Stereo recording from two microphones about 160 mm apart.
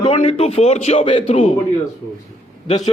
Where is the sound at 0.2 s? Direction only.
40° left (ahead or behind).